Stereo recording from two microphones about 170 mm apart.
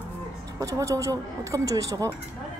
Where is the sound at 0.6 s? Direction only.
20° right (ahead or behind).